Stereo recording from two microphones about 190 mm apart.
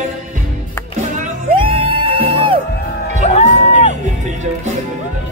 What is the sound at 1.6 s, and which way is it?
Music, 30° right (ahead or behind).